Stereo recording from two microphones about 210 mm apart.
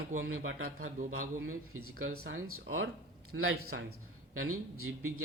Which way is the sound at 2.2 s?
75° right (ahead or behind).